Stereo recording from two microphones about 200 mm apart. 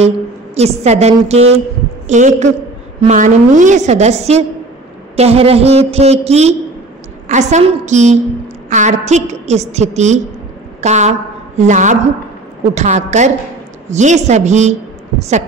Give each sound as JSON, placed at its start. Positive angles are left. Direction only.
{"t": 0.6, "sound": "a woman's voice", "side_deg": -35}